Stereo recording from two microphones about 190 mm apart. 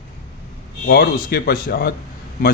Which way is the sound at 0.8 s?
55° left (ahead or behind).